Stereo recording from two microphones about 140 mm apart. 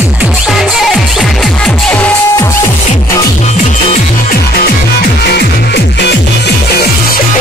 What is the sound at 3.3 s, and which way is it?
Music, 55° left (ahead or behind).